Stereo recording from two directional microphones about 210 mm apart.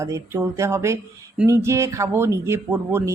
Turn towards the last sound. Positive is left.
turn(degrees=-10)  # may be behind; listen again after turning